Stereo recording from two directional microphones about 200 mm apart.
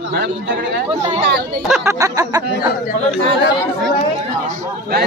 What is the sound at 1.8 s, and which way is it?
Speech, 15° right (ahead or behind).